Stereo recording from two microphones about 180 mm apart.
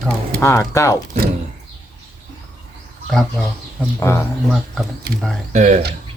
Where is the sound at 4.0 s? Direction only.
15° left (ahead or behind).